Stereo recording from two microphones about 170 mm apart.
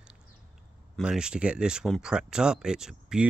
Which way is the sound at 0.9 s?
5° right (ahead or behind).